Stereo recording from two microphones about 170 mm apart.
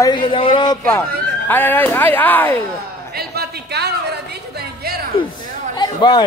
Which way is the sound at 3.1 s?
70° right (ahead or behind).